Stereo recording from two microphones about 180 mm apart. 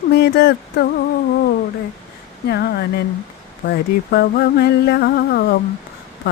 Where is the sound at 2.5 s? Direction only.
65° left (ahead or behind).